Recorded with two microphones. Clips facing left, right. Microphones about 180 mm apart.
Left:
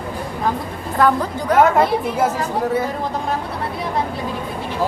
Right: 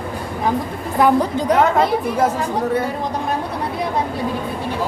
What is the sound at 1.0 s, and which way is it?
Speech, 15° right (ahead or behind).